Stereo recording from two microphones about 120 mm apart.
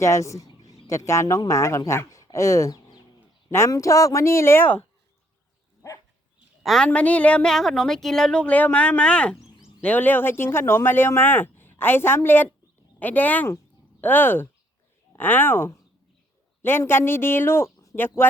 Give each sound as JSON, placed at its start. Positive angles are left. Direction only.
{"t": 0.0, "sound": "a man's voice", "side_deg": 25}
{"t": 6.6, "sound": "speech", "side_deg": 5}